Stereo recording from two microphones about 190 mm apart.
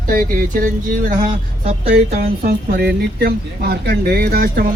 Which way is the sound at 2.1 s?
55° right (ahead or behind).